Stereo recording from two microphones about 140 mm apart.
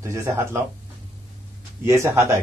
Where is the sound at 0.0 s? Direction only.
20° right (ahead or behind).